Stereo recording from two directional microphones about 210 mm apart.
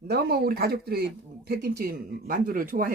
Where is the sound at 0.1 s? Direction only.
50° right (ahead or behind).